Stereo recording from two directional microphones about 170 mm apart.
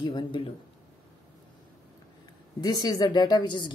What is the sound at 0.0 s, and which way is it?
Speech, 30° left (ahead or behind).